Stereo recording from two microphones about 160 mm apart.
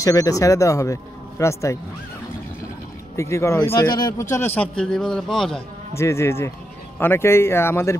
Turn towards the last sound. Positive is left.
turn(degrees=15)  # may be behind; listen again after turning